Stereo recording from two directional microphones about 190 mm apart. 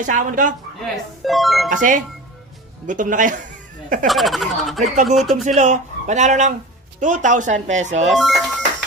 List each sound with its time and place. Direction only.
0.0 s speech: 45° right (ahead or behind)
1.2 s speech: centre (ahead or behind)
1.7 s speech: 40° right (ahead or behind)
4.0 s speech: centre (ahead or behind)
5.5 s speech: 40° right (ahead or behind)
8.0 s speech: centre (ahead or behind)